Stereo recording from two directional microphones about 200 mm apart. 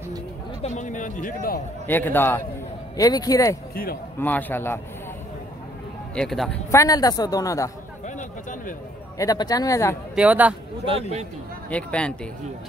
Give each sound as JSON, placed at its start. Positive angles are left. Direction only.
{"t": 0.6, "sound": "a sound", "side_deg": 35}
{"t": 1.9, "sound": "a woman's voice", "side_deg": 10}
{"t": 3.7, "sound": "speech", "side_deg": 50}
{"t": 4.2, "sound": "a woman's voice", "side_deg": 10}
{"t": 6.1, "sound": "speech", "side_deg": 0}
{"t": 6.7, "sound": "a woman's voice", "side_deg": 15}
{"t": 8.2, "sound": "a sound", "side_deg": 40}
{"t": 9.2, "sound": "a woman's voice", "side_deg": 20}
{"t": 10.1, "sound": "a man's voice", "side_deg": -5}
{"t": 10.9, "sound": "speech", "side_deg": -30}
{"t": 11.7, "sound": "speech", "side_deg": 5}